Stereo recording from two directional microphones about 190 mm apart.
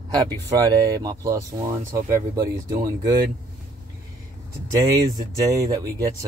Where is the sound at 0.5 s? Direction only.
15° right (ahead or behind).